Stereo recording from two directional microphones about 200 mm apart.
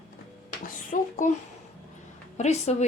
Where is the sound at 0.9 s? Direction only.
40° left (ahead or behind).